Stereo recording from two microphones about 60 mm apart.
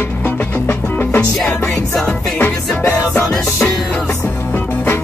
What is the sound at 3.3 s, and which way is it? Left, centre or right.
Music, centre.